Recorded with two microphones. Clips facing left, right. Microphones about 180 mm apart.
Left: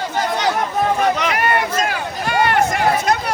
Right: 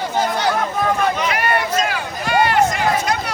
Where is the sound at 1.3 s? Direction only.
50° left (ahead or behind).